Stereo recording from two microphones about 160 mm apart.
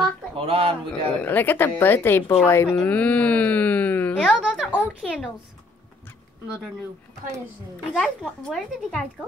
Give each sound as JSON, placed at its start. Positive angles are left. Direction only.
{"t": 0.5, "sound": "a man's voice", "side_deg": -35}
{"t": 1.2, "sound": "a woman's voice", "side_deg": 10}
{"t": 4.6, "sound": "a woman's voice", "side_deg": -5}
{"t": 6.4, "sound": "speech", "side_deg": -5}
{"t": 8.0, "sound": "speech", "side_deg": 5}